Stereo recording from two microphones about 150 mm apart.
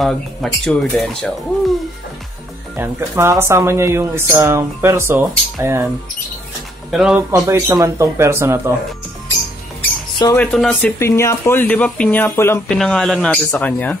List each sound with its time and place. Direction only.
0.0 s speech: centre (ahead or behind)
2.7 s speech: 15° right (ahead or behind)
6.9 s speech: 5° right (ahead or behind)
7.2 s speech: 20° right (ahead or behind)
10.3 s speech: 10° left (ahead or behind)
12.7 s speech: 5° left (ahead or behind)